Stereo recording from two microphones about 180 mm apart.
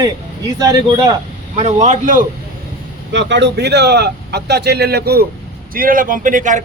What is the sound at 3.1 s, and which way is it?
A man's voice, 80° right.